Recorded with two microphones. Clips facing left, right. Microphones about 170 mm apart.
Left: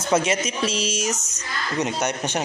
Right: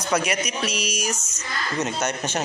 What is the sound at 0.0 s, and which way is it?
Speech, 25° left (ahead or behind).